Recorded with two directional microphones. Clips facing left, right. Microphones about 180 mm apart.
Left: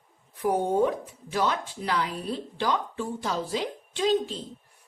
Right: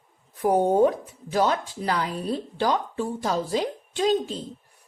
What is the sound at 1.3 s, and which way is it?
Speech, 40° right (ahead or behind).